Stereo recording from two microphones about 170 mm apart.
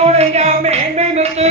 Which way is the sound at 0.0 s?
40° right (ahead or behind).